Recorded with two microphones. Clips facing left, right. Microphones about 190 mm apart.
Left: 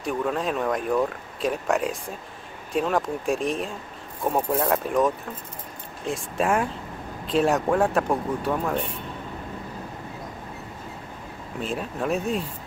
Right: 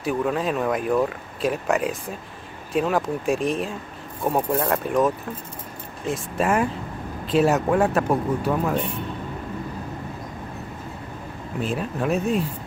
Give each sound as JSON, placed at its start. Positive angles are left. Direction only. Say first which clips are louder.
{"t": 0.0, "sound": "speech", "louder": "right 2 dB", "side_deg": -5}
{"t": 11.6, "sound": "speech", "louder": "right 2 dB", "side_deg": 0}